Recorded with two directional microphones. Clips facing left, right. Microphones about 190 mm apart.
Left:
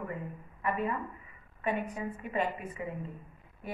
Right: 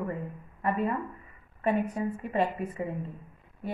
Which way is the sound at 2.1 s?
35° right (ahead or behind).